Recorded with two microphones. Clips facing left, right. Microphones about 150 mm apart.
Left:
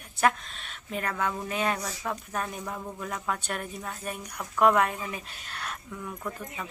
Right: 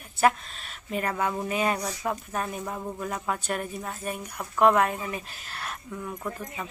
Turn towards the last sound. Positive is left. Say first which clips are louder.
# right 2 dB
turn(degrees=-10)  # may be behind; listen again after turning